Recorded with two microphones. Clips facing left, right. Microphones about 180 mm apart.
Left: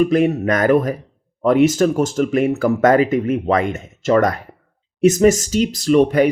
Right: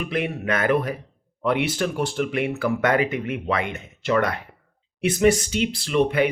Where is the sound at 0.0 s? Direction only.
40° left (ahead or behind).